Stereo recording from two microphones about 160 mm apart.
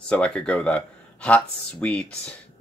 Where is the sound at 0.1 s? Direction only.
5° left (ahead or behind).